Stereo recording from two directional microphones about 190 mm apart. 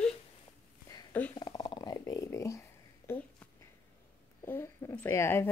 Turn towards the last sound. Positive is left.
turn(degrees=15)  # may be behind; listen again after turning